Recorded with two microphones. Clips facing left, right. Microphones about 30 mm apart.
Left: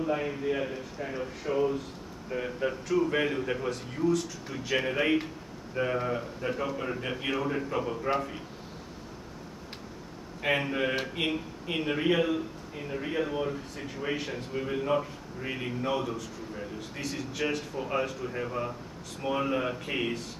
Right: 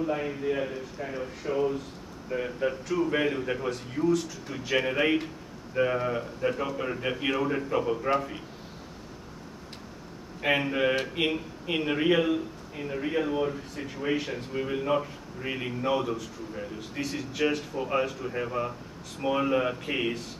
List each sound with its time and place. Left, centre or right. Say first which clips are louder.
0.0 s a man's voice: right 1 dB; centre
10.4 s a man's voice: right 3 dB; centre